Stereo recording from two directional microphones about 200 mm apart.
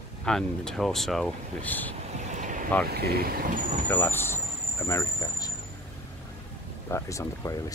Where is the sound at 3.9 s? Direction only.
10° left (ahead or behind).